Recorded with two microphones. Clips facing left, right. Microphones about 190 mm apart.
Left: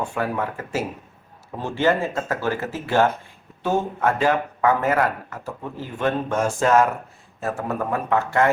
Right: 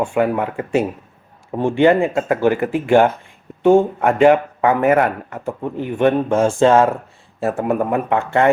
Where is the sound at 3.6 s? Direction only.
25° right (ahead or behind).